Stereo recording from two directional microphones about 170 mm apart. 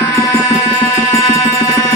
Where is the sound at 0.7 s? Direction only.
20° left (ahead or behind).